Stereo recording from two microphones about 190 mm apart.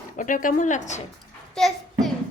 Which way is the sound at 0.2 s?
45° left (ahead or behind).